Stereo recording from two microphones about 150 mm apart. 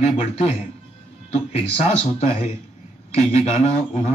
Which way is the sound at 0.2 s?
40° left (ahead or behind).